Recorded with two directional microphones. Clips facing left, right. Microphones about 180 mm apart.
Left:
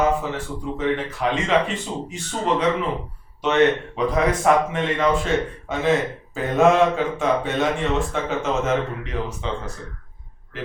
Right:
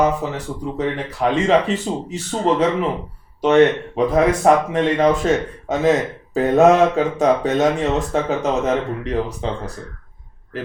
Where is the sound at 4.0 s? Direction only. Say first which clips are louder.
Right 7 dB; 35° right (ahead or behind).